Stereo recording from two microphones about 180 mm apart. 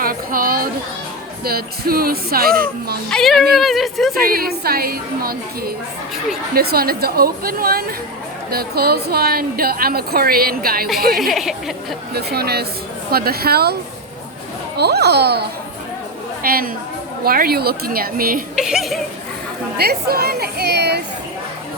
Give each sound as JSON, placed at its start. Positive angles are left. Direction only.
{"t": 0.0, "sound": "a sound", "side_deg": -50}
{"t": 1.5, "sound": "speech", "side_deg": -55}
{"t": 3.1, "sound": "speech", "side_deg": 0}
{"t": 4.2, "sound": "speech", "side_deg": -55}
{"t": 11.1, "sound": "speech", "side_deg": 0}
{"t": 12.1, "sound": "speech", "side_deg": -60}
{"t": 14.8, "sound": "a woman's voice", "side_deg": -65}
{"t": 18.5, "sound": "speech", "side_deg": -5}
{"t": 19.7, "sound": "speech", "side_deg": -60}